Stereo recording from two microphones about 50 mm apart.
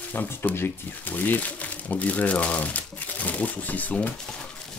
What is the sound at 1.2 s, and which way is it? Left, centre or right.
Speech, left.